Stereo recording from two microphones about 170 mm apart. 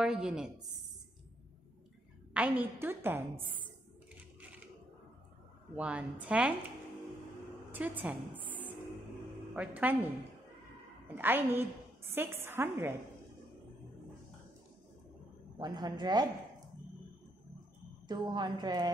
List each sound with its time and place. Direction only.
0.0 s a woman's voice: 5° right (ahead or behind)
2.3 s a woman's voice: 10° right (ahead or behind)
5.8 s a woman's voice: 10° right (ahead or behind)
7.7 s a woman's voice: 10° right (ahead or behind)
9.6 s a woman's voice: 10° right (ahead or behind)
15.6 s a woman's voice: 25° right (ahead or behind)
18.0 s a woman's voice: 25° right (ahead or behind)